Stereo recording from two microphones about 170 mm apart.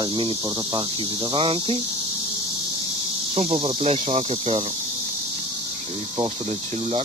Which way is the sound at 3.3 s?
35° right (ahead or behind).